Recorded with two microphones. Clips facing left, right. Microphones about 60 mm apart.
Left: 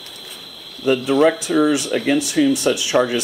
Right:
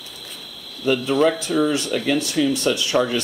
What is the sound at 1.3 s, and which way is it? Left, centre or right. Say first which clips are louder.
Speech: left 3 dB; centre.